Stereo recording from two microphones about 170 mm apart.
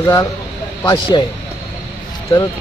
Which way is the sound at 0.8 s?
25° left (ahead or behind).